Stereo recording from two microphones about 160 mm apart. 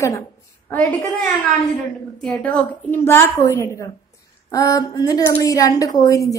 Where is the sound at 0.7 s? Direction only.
10° left (ahead or behind).